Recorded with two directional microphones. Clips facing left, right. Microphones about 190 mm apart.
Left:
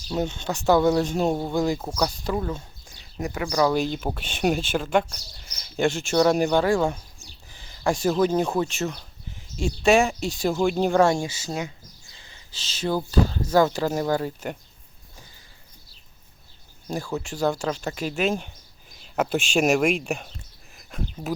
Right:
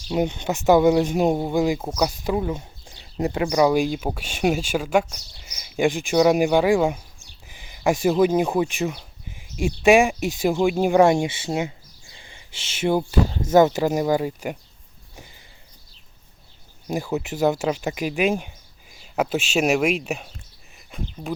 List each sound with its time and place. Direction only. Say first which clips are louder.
0.1 s speech: right 4 dB; 15° right (ahead or behind)
3.5 s speech: right 2 dB; 15° right (ahead or behind)
12.1 s a sound: right 4 dB; 15° right (ahead or behind)
12.8 s speech: right 2 dB; 25° right (ahead or behind)
16.8 s speech: right 4 dB; 15° right (ahead or behind); by 21.3 s centre (ahead or behind)